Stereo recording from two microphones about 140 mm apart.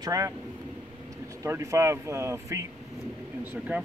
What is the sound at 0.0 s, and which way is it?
Speech, 25° right (ahead or behind).